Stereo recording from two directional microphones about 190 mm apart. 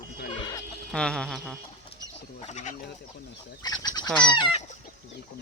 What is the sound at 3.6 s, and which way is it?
Goose, 20° left (ahead or behind).